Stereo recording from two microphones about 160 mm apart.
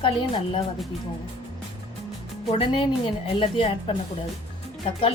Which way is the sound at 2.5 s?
35° left (ahead or behind).